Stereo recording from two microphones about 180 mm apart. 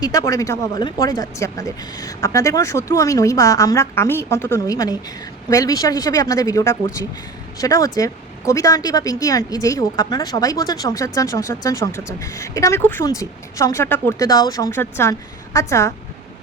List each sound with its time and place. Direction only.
0.0 s speech: 20° left (ahead or behind)